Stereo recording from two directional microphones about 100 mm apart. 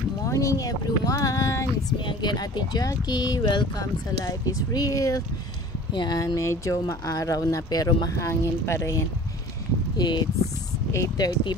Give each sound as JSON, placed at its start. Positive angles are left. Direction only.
{"t": 0.2, "sound": "speech", "side_deg": 30}
{"t": 2.0, "sound": "speech", "side_deg": 50}
{"t": 9.9, "sound": "speech", "side_deg": 45}